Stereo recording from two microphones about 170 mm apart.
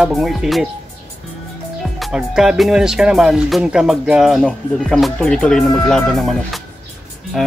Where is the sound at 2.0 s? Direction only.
Centre (ahead or behind).